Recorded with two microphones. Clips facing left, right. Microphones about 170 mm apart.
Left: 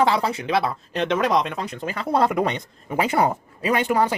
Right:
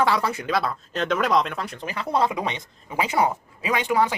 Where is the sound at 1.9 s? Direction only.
50° left (ahead or behind).